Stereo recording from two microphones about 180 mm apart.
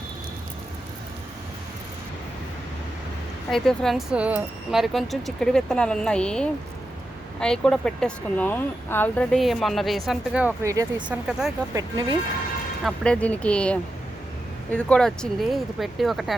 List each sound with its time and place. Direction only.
3.5 s speech: centre (ahead or behind)
10.6 s speech: 15° right (ahead or behind)
11.3 s speech: 5° right (ahead or behind)
11.7 s speech: 20° right (ahead or behind)
12.8 s speech: 5° left (ahead or behind)